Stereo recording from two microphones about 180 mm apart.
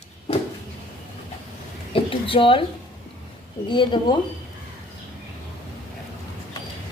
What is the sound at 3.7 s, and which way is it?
Speech, 25° left (ahead or behind).